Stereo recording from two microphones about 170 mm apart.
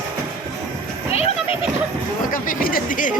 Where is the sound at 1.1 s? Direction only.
35° left (ahead or behind).